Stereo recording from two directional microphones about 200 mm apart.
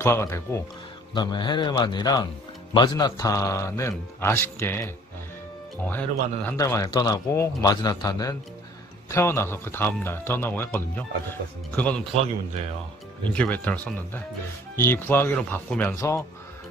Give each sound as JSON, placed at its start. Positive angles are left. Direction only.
{"t": 0.0, "sound": "a man's voice", "side_deg": 15}
{"t": 13.3, "sound": "a man's voice", "side_deg": 5}